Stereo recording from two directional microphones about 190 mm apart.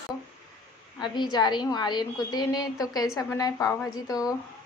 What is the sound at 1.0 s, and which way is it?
A woman's voice, 20° left (ahead or behind).